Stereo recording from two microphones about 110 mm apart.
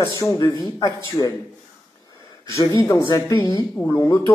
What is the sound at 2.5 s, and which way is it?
Speech, 35° left (ahead or behind).